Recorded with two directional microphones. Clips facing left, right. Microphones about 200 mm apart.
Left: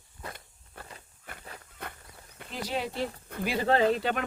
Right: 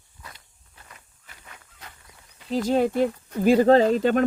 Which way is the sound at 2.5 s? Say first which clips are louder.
Right 12 dB; 45° right (ahead or behind).